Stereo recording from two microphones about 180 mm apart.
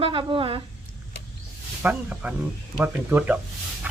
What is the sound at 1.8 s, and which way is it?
A woman's voice, 5° right (ahead or behind).